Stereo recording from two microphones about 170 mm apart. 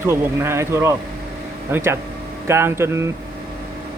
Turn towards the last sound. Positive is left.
turn(degrees=-15)  # may be behind; listen again after turning